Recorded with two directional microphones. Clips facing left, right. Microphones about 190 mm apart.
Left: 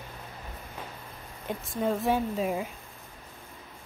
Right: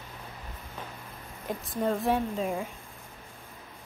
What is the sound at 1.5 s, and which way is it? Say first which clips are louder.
Speech: even; centre (ahead or behind).